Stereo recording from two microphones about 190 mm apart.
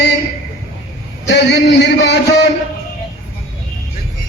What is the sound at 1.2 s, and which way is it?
A man's voice, 60° left (ahead or behind).